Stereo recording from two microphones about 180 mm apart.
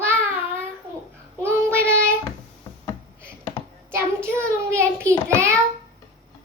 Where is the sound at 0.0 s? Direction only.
10° right (ahead or behind).